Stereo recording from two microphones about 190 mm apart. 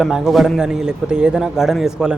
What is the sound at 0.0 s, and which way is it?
Speech, centre (ahead or behind).